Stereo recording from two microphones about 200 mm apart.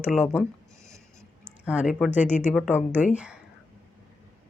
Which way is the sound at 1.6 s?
5° right (ahead or behind).